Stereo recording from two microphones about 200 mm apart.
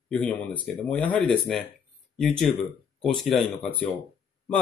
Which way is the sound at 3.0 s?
Centre (ahead or behind).